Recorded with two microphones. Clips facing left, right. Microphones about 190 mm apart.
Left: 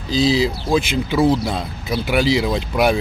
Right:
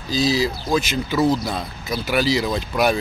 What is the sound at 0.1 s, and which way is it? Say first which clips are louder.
Speech: left 3 dB; 25° left (ahead or behind).